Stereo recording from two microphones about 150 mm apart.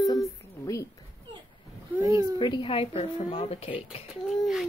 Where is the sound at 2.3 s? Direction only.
35° left (ahead or behind).